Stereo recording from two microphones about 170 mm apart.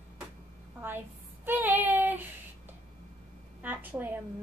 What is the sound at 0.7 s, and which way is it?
Child singing, 10° right (ahead or behind).